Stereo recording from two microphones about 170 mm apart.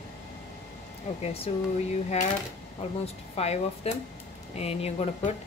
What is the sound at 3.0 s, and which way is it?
A woman's voice, 35° left (ahead or behind).